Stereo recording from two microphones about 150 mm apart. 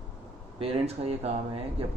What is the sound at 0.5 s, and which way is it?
Speech, 45° right (ahead or behind).